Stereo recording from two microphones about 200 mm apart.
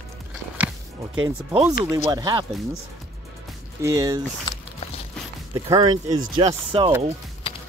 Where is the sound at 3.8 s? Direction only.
15° right (ahead or behind).